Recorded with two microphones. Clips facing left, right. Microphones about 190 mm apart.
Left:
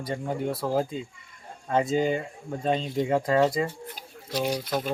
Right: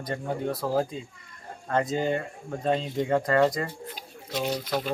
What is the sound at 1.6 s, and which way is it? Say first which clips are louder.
Speech: left 2 dB; 5° left (ahead or behind).